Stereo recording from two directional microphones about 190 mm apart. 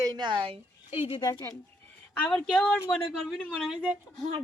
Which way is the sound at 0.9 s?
30° left (ahead or behind).